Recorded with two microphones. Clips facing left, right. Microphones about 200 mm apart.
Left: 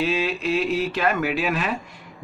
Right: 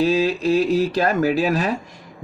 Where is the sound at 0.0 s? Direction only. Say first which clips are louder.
Right 5 dB; 40° right (ahead or behind).